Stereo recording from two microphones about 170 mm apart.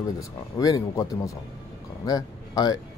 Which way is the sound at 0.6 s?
20° left (ahead or behind).